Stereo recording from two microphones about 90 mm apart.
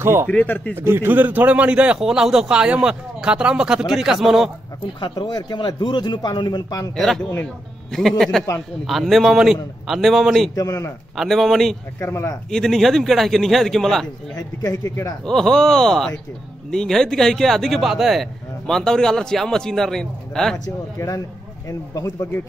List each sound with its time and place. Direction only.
0.0 s speech: 30° right (ahead or behind)
0.3 s speech: 15° left (ahead or behind)
0.7 s a man's voice: 25° right (ahead or behind); by 4.5 s 5° right (ahead or behind)
5.0 s a man's voice: 50° left (ahead or behind)
7.0 s speech: 5° left (ahead or behind)
10.5 s speech: 40° left (ahead or behind)
11.1 s speech: 5° left (ahead or behind)
12.0 s speech: 30° left (ahead or behind)
12.4 s speech: 5° left (ahead or behind)
14.3 s speech: 45° left (ahead or behind)
15.2 s speech: 5° left (ahead or behind)
21.0 s speech: 40° left (ahead or behind)